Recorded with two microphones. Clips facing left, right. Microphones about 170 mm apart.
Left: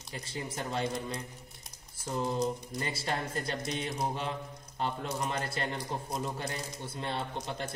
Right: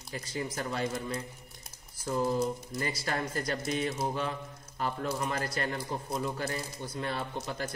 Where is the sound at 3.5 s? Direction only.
5° right (ahead or behind).